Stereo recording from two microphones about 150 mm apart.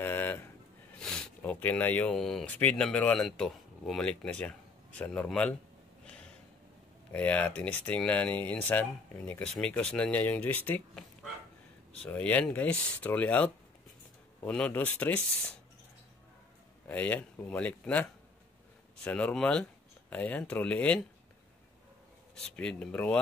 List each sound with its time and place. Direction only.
0.0 s a sound: 15° left (ahead or behind)
0.9 s speech: 5° left (ahead or behind)
7.1 s speech: 10° left (ahead or behind)
11.9 s speech: 10° left (ahead or behind)
16.8 s speech: 10° left (ahead or behind)
19.0 s speech: 5° left (ahead or behind)
22.3 s speech: 5° left (ahead or behind)